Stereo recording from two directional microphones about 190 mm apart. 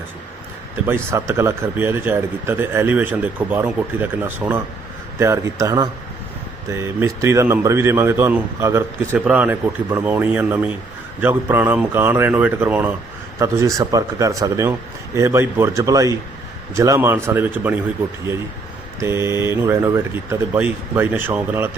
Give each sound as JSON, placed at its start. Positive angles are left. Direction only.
{"t": 0.9, "sound": "a man's voice", "side_deg": -15}
{"t": 19.0, "sound": "a man's voice", "side_deg": -15}